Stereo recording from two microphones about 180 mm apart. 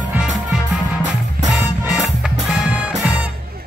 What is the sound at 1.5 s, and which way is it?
Music, centre (ahead or behind).